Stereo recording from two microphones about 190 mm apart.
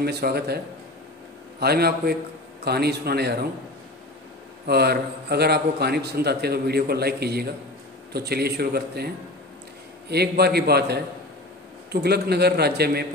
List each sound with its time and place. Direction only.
0.0 s a man's voice: 55° right (ahead or behind)
1.6 s a man's voice: 55° right (ahead or behind)
4.6 s a man's voice: 60° right (ahead or behind)